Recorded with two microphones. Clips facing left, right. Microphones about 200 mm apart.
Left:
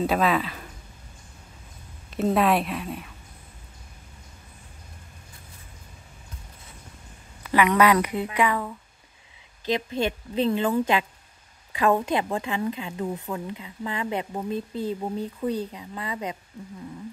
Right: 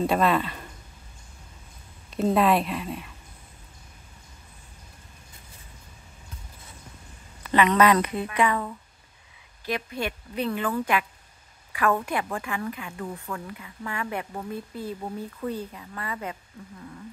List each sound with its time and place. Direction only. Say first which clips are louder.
0.0 s speech: even; centre (ahead or behind)
2.1 s speech: even; centre (ahead or behind)
7.4 s a woman's voice: even; 10° left (ahead or behind)
9.7 s speech: left 4 dB; 25° left (ahead or behind)